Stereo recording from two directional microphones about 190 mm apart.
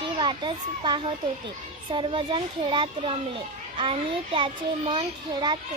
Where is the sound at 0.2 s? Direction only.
25° right (ahead or behind).